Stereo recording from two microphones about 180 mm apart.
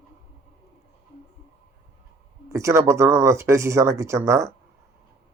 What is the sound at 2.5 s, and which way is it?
Speech, 15° right (ahead or behind).